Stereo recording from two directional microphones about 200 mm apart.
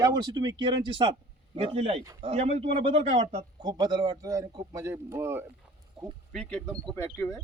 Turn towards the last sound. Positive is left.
turn(degrees=15)  # may be behind; listen again after turning